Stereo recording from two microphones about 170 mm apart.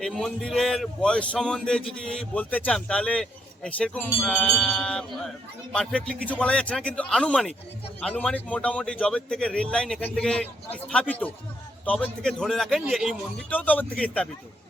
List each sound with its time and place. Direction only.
0.0 s a man's voice: centre (ahead or behind)
13.5 s a man's voice: 10° left (ahead or behind)